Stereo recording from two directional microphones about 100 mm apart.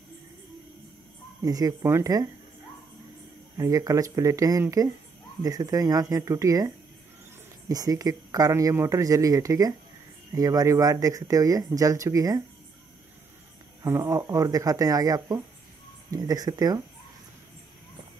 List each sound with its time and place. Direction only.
1.4 s speech: 40° right (ahead or behind)
3.5 s speech: 35° right (ahead or behind)
13.8 s speech: 30° right (ahead or behind)